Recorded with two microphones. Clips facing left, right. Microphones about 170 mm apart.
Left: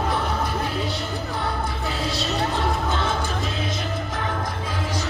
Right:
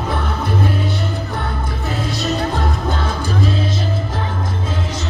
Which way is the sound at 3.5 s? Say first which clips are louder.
Right 6 dB; 30° right (ahead or behind).